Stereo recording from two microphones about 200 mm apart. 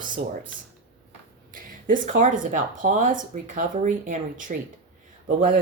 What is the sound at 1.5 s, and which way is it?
Speech, 40° right (ahead or behind).